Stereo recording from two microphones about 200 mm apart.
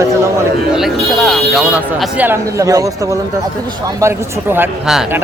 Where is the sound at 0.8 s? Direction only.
Centre (ahead or behind).